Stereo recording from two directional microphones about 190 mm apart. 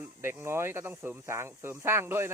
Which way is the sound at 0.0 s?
10° right (ahead or behind).